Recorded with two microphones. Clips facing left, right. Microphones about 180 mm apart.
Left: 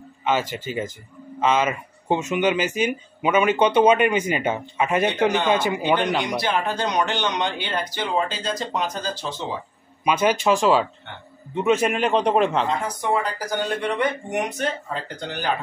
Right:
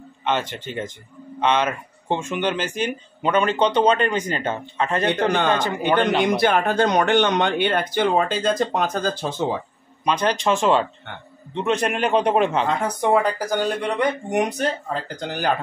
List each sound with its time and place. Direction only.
0.2 s a man's voice: 5° left (ahead or behind)
6.2 s speech: 55° right (ahead or behind)
10.0 s a man's voice: 5° left (ahead or behind)
12.6 s speech: 60° right (ahead or behind)
13.9 s speech: 40° right (ahead or behind)